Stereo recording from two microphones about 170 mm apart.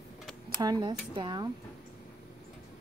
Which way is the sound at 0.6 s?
25° right (ahead or behind).